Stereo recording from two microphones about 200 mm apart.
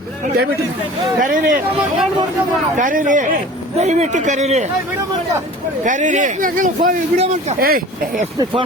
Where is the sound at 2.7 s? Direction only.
40° right (ahead or behind).